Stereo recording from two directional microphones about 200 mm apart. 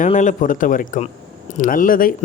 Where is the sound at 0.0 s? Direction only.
40° left (ahead or behind).